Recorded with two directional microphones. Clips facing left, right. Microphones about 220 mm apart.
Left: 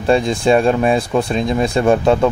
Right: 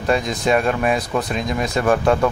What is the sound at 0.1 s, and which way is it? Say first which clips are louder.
Speech: left 5 dB; 30° left (ahead or behind).